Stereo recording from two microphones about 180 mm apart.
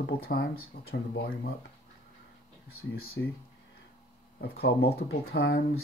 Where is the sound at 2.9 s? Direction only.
60° left (ahead or behind).